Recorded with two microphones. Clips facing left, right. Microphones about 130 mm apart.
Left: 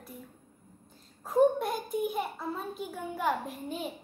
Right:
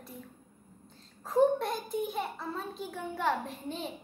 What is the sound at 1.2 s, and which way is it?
A child's voice, 5° left (ahead or behind).